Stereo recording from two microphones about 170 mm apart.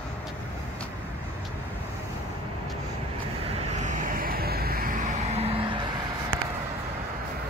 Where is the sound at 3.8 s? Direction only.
50° right (ahead or behind); by 5.8 s 35° right (ahead or behind).